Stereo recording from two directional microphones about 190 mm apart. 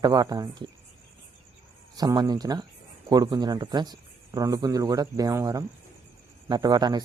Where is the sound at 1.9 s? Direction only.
20° right (ahead or behind).